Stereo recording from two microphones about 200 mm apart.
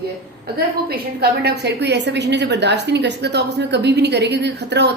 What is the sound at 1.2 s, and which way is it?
A woman's voice, 55° right (ahead or behind).